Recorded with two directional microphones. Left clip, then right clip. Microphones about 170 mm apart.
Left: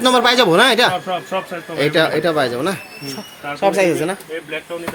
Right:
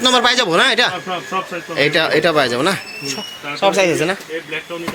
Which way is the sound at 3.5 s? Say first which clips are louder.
Right 1 dB; 20° left (ahead or behind).